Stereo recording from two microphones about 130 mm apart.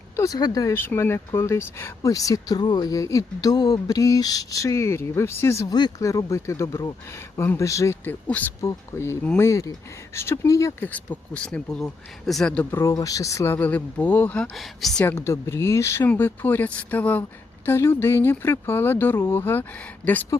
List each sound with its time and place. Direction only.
0.2 s speech: 30° left (ahead or behind)
8.3 s speech: 10° left (ahead or behind)
12.7 s speech: 25° left (ahead or behind)
14.5 s speech: centre (ahead or behind)
15.0 s speech: 20° left (ahead or behind)